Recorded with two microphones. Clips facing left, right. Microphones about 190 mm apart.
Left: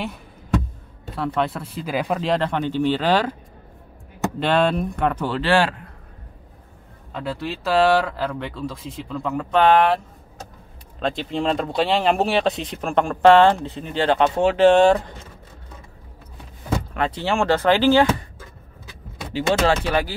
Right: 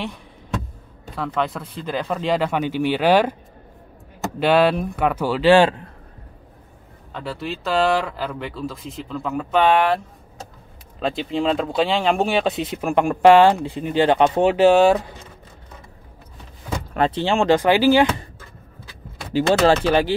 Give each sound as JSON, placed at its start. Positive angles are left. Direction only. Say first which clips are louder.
{"t": 1.1, "sound": "speech", "louder": "left 1 dB", "side_deg": 0}
{"t": 2.1, "sound": "speech", "louder": "right 3 dB", "side_deg": 0}
{"t": 4.4, "sound": "speech", "louder": "right 3 dB", "side_deg": -5}
{"t": 7.1, "sound": "speech", "louder": "left 1 dB", "side_deg": 0}
{"t": 16.9, "sound": "speech", "louder": "right 6 dB", "side_deg": -30}
{"t": 19.3, "sound": "speech", "louder": "right 3 dB", "side_deg": -30}